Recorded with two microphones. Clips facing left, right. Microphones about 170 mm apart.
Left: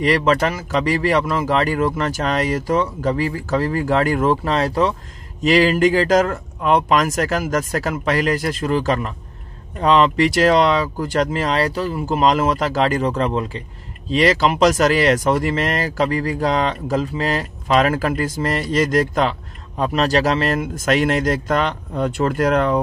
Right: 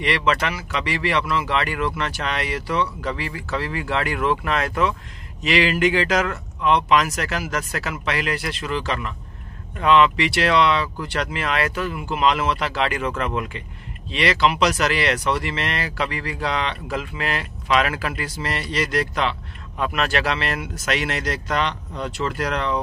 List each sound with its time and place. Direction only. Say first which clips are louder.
0.0 s speech: left 5 dB; 40° left (ahead or behind)